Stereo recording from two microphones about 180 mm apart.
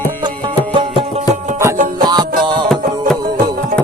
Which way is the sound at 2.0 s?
20° right (ahead or behind).